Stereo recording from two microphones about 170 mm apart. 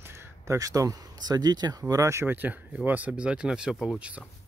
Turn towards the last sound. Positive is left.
turn(degrees=-5)  # may be behind; listen again after turning